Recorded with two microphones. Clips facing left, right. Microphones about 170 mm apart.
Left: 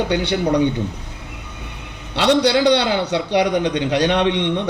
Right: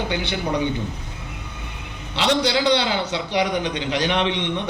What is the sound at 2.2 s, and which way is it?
A man's voice, 65° left (ahead or behind).